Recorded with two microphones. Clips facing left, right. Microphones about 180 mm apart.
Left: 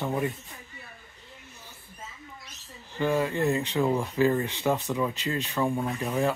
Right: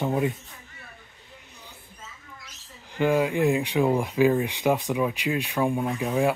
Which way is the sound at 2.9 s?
15° right (ahead or behind).